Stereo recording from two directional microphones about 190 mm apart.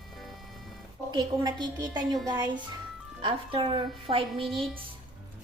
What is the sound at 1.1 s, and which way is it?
Speech, 25° right (ahead or behind).